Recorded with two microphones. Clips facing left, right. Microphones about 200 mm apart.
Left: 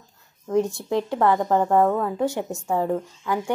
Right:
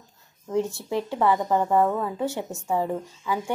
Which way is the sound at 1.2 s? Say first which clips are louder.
Left 2 dB; 10° right (ahead or behind).